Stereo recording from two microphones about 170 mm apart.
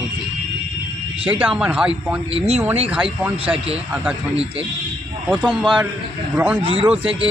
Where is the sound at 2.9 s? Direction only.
10° right (ahead or behind).